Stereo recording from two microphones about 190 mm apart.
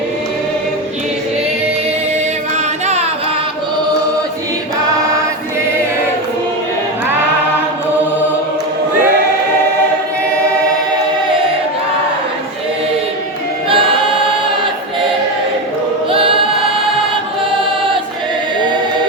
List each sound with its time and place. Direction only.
2.8 s carnatic music: 35° right (ahead or behind)
13.7 s choir: 30° right (ahead or behind)
16.1 s choir: 30° right (ahead or behind)